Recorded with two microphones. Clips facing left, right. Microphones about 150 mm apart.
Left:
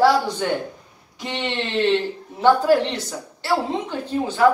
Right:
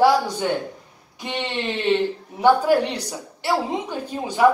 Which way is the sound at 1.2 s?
15° right (ahead or behind).